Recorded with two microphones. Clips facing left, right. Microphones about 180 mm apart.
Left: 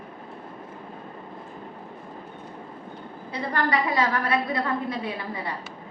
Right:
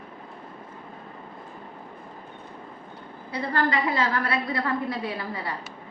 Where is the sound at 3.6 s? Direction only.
15° left (ahead or behind).